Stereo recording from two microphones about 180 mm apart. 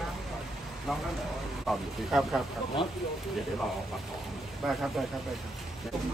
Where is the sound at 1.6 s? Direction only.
Centre (ahead or behind).